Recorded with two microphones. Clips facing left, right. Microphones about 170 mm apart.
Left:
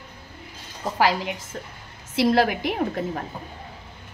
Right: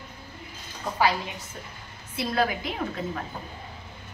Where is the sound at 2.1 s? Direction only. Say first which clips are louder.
Left 7 dB; 75° left (ahead or behind).